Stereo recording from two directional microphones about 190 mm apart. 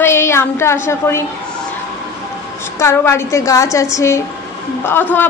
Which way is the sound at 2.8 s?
15° left (ahead or behind).